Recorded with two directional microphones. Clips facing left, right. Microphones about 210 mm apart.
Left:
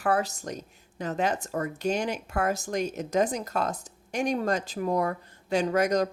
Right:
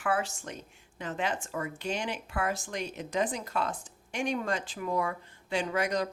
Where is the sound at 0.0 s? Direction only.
40° left (ahead or behind).